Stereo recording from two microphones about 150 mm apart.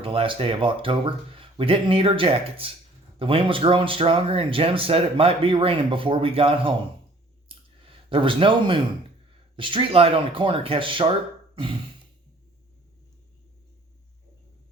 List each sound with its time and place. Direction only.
0.0 s speech: 35° right (ahead or behind)
7.4 s clicking: 35° right (ahead or behind)
9.6 s speech: 35° right (ahead or behind)